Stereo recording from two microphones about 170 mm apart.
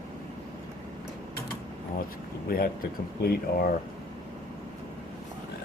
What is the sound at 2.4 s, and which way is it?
Speech, 60° left (ahead or behind).